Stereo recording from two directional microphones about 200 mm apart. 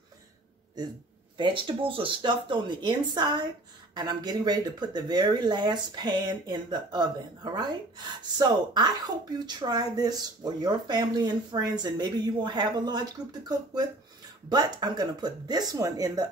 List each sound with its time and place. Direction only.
1.4 s speech: 25° right (ahead or behind)